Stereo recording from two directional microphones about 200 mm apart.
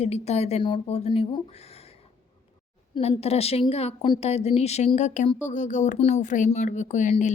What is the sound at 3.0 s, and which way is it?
Speech, 30° left (ahead or behind).